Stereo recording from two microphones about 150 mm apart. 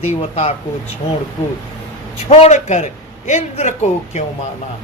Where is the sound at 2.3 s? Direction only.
45° left (ahead or behind).